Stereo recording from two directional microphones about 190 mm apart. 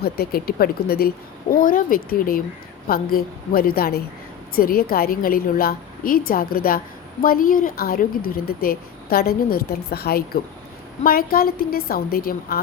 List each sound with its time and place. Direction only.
0.0 s a woman's voice: 55° left (ahead or behind)